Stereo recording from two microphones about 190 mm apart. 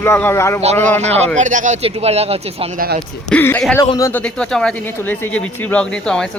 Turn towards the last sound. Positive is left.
turn(degrees=5)  # may be behind; listen again after turning